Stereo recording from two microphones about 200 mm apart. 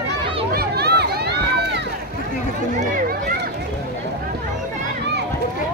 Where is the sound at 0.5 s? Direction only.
55° right (ahead or behind).